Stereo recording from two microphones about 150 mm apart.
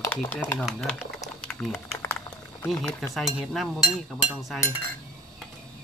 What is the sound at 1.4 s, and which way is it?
Typing, 5° left (ahead or behind).